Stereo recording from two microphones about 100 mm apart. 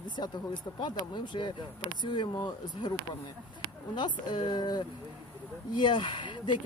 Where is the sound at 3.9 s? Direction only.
50° left (ahead or behind).